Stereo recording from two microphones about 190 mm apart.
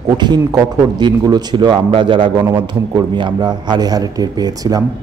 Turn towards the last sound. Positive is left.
turn(degrees=-20)  # may be behind; listen again after turning